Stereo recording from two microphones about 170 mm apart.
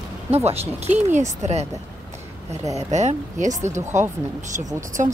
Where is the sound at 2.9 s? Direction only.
40° right (ahead or behind).